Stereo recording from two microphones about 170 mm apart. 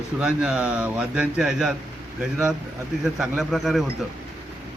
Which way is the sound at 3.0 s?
Centre (ahead or behind).